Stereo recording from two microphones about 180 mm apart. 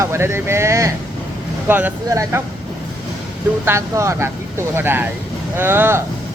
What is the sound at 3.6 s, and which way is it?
Speech, 15° right (ahead or behind).